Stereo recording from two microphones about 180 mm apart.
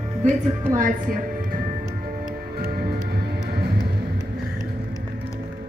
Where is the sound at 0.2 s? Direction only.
45° right (ahead or behind).